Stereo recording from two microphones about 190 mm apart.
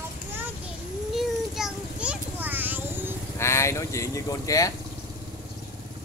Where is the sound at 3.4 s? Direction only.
15° left (ahead or behind).